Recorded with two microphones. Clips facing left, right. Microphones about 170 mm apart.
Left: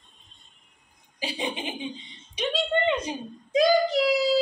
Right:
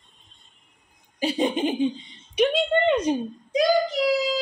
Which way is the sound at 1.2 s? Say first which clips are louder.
Right 9 dB; 45° right (ahead or behind).